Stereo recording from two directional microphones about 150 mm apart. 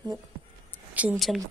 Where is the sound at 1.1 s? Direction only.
Centre (ahead or behind).